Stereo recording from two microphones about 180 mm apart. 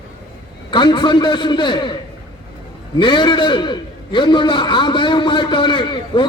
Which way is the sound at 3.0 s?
25° left (ahead or behind).